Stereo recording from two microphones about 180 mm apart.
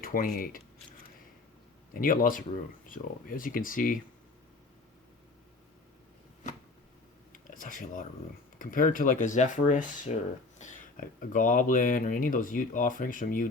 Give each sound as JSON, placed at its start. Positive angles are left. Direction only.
{"t": 0.0, "sound": "speech", "side_deg": 50}
{"t": 1.9, "sound": "speech", "side_deg": 50}
{"t": 7.3, "sound": "a sound", "side_deg": 50}
{"t": 8.5, "sound": "speech", "side_deg": 45}